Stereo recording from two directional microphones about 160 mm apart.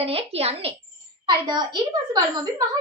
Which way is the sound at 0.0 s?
35° right (ahead or behind).